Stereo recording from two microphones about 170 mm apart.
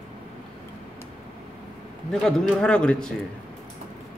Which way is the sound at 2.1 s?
5° left (ahead or behind).